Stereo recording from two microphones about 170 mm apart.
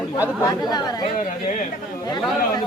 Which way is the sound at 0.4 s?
25° left (ahead or behind).